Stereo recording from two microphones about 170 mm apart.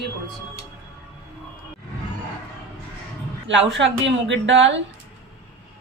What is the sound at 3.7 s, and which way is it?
Speech, 90° right.